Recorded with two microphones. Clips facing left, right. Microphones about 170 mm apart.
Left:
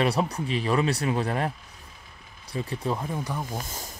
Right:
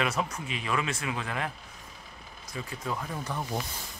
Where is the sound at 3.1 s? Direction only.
15° left (ahead or behind).